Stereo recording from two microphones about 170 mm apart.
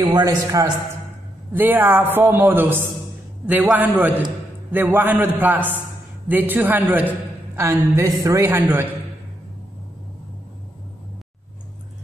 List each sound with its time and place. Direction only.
0.0 s a man's voice: 20° right (ahead or behind)